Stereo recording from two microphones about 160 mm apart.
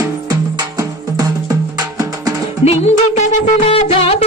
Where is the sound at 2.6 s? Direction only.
45° left (ahead or behind).